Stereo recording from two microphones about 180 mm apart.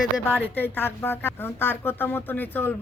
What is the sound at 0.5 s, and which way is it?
Speech, 10° left (ahead or behind).